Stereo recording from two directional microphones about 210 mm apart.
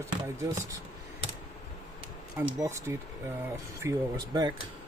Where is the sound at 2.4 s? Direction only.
10° right (ahead or behind).